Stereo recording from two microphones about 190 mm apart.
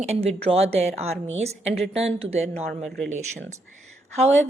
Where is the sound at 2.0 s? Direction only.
35° right (ahead or behind).